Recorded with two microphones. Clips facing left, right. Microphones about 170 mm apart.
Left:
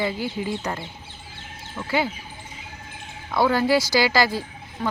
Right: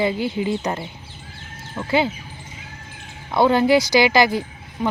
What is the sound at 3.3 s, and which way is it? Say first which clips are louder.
Speech: right 4 dB; 20° right (ahead or behind).